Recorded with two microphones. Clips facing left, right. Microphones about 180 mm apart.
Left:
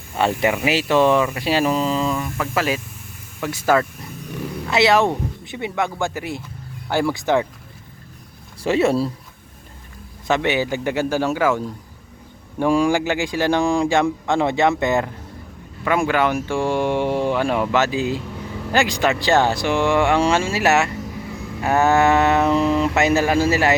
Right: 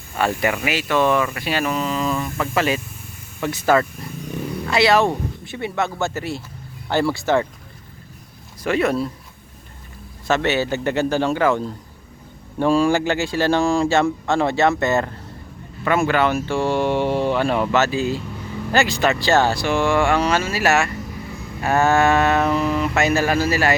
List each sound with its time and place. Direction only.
0.2 s speech: 20° left (ahead or behind)
0.7 s speech: 30° left (ahead or behind)
2.1 s speech: 5° left (ahead or behind)
4.7 s speech: 20° left (ahead or behind)
8.6 s speech: 30° left (ahead or behind)
10.2 s speech: 15° left (ahead or behind)